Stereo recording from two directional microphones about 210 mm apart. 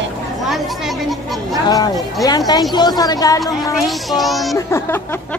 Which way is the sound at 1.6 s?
15° left (ahead or behind).